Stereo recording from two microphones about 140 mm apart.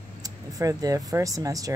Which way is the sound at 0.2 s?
25° right (ahead or behind).